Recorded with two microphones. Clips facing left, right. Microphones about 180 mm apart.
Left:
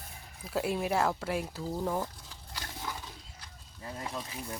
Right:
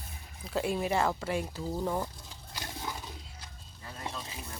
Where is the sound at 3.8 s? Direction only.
20° left (ahead or behind).